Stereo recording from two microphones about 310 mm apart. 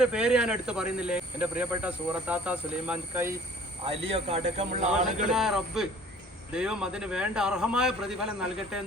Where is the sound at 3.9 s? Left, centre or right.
Centre.